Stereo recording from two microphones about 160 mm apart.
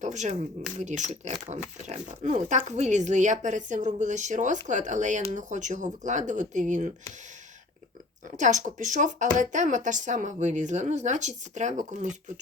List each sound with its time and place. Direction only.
0.0 s speech: 45° right (ahead or behind)
8.4 s speech: 50° right (ahead or behind)